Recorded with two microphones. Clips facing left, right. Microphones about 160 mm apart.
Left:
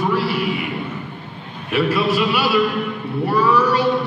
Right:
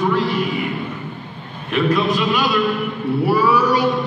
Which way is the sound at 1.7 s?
5° left (ahead or behind).